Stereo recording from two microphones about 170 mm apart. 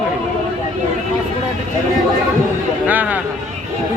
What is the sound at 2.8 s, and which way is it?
Speech, 10° right (ahead or behind).